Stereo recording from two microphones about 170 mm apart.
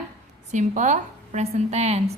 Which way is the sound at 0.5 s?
45° right (ahead or behind).